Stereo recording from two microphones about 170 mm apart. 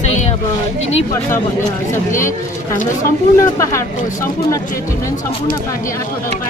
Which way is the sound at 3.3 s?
15° left (ahead or behind).